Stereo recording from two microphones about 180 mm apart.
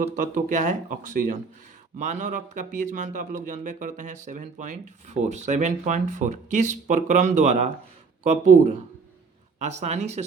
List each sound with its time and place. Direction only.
0.2 s speech: 50° right (ahead or behind)